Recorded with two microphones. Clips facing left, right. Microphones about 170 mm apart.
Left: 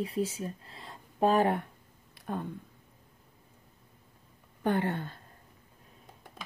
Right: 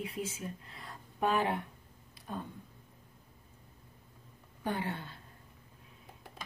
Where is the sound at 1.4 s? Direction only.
50° left (ahead or behind).